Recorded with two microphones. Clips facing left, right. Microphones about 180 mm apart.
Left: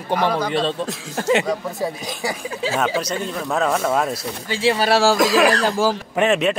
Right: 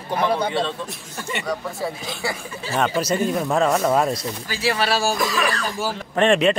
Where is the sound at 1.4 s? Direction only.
20° left (ahead or behind).